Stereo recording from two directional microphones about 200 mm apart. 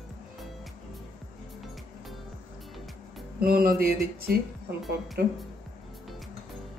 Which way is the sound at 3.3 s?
50° right (ahead or behind).